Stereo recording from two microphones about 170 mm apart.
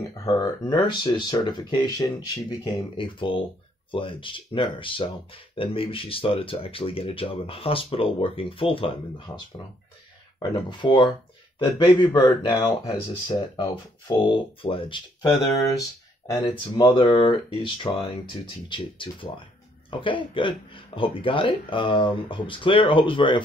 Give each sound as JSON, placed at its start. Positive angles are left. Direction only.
{"t": 0.2, "sound": "speech", "side_deg": 25}
{"t": 10.7, "sound": "speech", "side_deg": 25}
{"t": 16.3, "sound": "speech", "side_deg": 15}
{"t": 16.8, "sound": "speech", "side_deg": 30}